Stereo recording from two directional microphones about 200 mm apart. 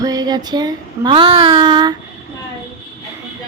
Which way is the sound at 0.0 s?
20° right (ahead or behind).